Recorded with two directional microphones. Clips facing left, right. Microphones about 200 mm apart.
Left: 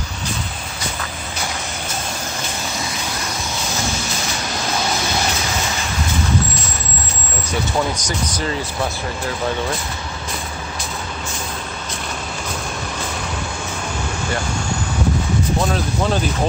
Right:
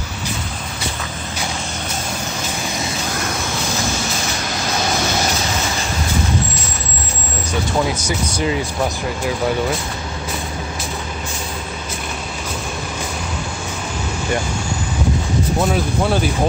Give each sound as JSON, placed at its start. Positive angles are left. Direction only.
{"t": 8.0, "sound": "speech", "side_deg": -10}
{"t": 15.7, "sound": "speech", "side_deg": -10}